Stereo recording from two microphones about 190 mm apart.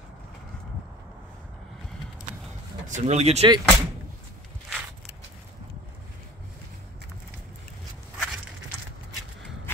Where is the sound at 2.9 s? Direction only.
35° right (ahead or behind).